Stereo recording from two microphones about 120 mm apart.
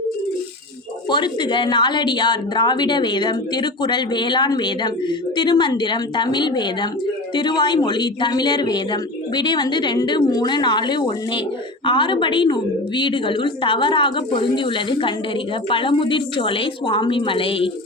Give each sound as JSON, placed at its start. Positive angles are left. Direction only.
{"t": 1.1, "sound": "a woman's voice", "side_deg": 40}